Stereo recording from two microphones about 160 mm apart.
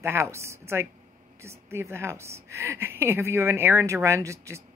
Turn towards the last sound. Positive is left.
turn(degrees=-20)  # may be behind; listen again after turning